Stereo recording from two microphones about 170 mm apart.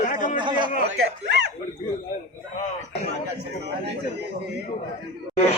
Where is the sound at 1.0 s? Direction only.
85° right.